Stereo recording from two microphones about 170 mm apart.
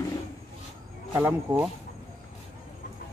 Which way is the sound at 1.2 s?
10° right (ahead or behind).